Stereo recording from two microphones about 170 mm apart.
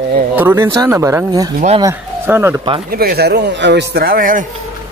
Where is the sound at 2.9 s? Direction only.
65° right (ahead or behind).